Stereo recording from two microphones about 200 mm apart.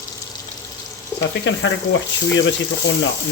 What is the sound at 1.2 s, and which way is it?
Speech, 65° left (ahead or behind).